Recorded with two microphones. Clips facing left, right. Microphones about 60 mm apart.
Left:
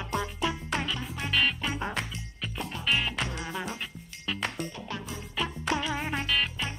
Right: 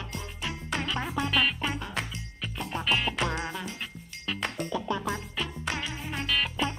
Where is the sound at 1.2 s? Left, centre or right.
Centre.